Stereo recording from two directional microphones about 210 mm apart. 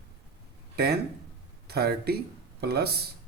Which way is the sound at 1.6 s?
50° right (ahead or behind).